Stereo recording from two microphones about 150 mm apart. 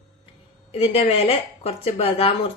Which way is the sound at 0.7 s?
40° left (ahead or behind).